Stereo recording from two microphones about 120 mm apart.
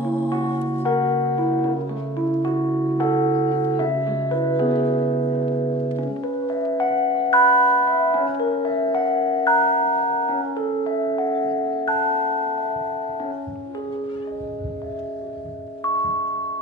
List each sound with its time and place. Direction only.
0.8 s music: 35° left (ahead or behind)
3.1 s singing bowl: 35° left (ahead or behind)
4.6 s music: 40° left (ahead or behind)